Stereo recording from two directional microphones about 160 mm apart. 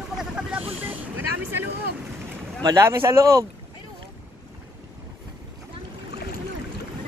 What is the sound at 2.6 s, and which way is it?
Speech, 20° right (ahead or behind).